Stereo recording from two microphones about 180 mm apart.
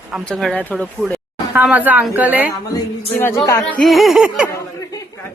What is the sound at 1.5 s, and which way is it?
Speech, 10° right (ahead or behind).